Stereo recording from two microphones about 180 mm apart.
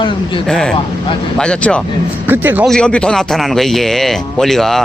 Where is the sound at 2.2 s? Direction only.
10° right (ahead or behind).